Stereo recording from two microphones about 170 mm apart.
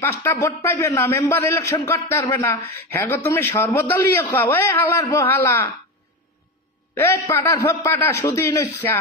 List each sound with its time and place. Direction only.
0.0 s a man's voice: 15° left (ahead or behind)
7.0 s a man's voice: 15° left (ahead or behind)